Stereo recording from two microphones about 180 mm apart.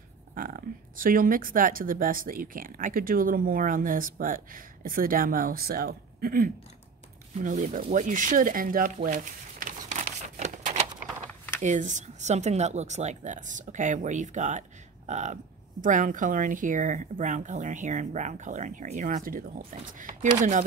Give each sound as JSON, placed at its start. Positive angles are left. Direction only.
{"t": 0.3, "sound": "speech", "side_deg": -50}
{"t": 7.3, "sound": "speech", "side_deg": -45}
{"t": 10.4, "sound": "typewriter", "side_deg": -45}
{"t": 11.6, "sound": "speech", "side_deg": -45}